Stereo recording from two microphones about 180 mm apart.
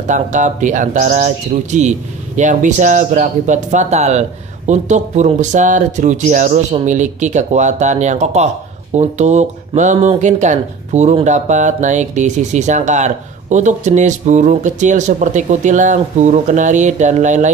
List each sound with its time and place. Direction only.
0.1 s speech: 45° right (ahead or behind)